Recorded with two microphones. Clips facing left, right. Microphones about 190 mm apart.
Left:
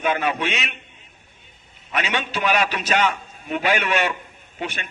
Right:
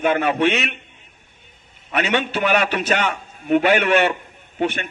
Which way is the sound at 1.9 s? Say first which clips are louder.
Right 5 dB; 60° right (ahead or behind).